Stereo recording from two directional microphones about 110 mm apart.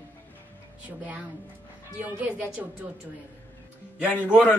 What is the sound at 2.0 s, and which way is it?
Speech, 15° right (ahead or behind).